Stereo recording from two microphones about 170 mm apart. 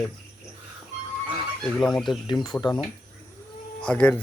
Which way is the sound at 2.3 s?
25° left (ahead or behind).